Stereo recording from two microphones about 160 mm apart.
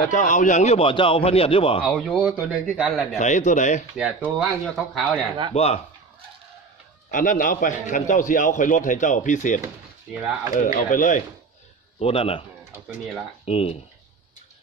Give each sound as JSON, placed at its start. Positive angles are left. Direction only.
{"t": 0.1, "sound": "a man's voice", "side_deg": 50}
{"t": 1.9, "sound": "speech", "side_deg": 0}
{"t": 3.2, "sound": "a man's voice", "side_deg": 50}
{"t": 4.2, "sound": "speech", "side_deg": 0}
{"t": 5.5, "sound": "a man's voice", "side_deg": 40}
{"t": 7.1, "sound": "a man's voice", "side_deg": 55}
{"t": 12.0, "sound": "a man's voice", "side_deg": 35}
{"t": 12.8, "sound": "speech", "side_deg": -5}
{"t": 13.5, "sound": "a man's voice", "side_deg": 40}